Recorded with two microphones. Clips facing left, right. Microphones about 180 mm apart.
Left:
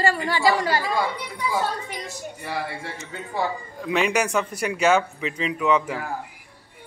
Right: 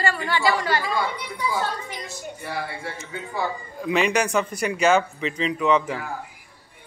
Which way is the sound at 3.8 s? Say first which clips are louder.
Right 1 dB; centre (ahead or behind).